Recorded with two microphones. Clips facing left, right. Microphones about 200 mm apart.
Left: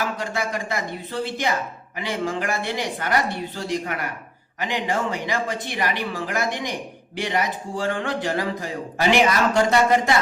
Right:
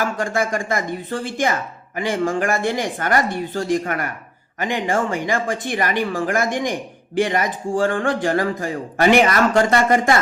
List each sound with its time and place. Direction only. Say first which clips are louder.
0.0 s a man's voice: right 5 dB; 50° right (ahead or behind)